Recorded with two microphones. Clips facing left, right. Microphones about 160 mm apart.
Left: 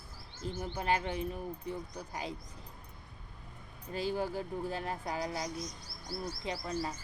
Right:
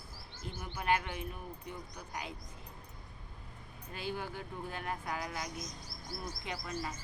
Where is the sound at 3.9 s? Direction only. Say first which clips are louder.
Left 6 dB; 35° left (ahead or behind).